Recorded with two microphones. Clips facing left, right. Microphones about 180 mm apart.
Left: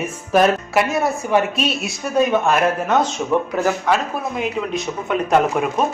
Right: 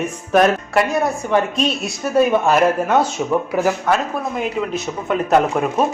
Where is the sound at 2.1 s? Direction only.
10° right (ahead or behind).